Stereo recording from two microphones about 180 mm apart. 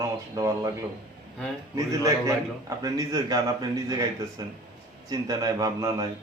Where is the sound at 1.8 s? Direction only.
15° right (ahead or behind).